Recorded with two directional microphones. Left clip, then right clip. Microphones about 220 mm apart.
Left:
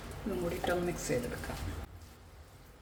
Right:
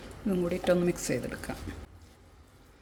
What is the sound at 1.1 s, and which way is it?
Speech, 50° right (ahead or behind).